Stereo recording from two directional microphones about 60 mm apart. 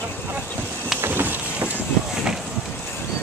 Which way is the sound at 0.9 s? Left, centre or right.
Right.